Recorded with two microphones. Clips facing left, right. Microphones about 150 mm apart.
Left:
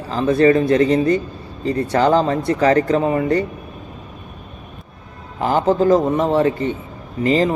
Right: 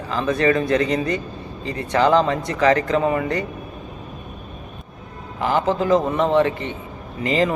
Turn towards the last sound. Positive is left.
turn(degrees=35)  # may be behind; listen again after turning